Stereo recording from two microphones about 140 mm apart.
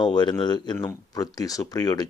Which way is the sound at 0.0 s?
30° left (ahead or behind).